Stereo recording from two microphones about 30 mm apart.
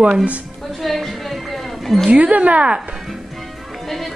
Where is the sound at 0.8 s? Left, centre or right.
Centre.